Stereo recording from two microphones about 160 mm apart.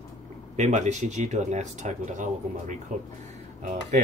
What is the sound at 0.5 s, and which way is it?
Speech, 50° right (ahead or behind).